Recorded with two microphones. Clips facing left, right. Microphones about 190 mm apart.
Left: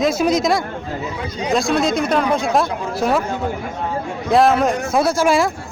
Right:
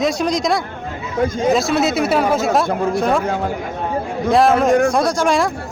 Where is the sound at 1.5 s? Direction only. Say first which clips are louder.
Left 4 dB; centre (ahead or behind).